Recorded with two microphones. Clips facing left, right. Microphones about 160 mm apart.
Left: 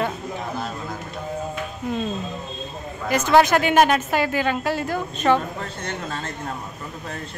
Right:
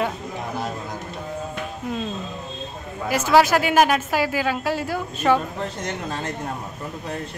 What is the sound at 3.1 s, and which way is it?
Speech, 5° right (ahead or behind).